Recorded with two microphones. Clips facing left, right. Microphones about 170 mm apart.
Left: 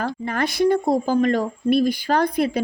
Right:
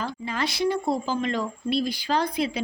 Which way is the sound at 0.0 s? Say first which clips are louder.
Left 5 dB; 55° left (ahead or behind).